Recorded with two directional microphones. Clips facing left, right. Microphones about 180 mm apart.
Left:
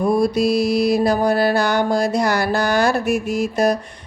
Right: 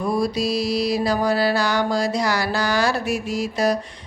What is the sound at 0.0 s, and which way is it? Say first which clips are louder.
Music: left 5 dB; 55° left (ahead or behind).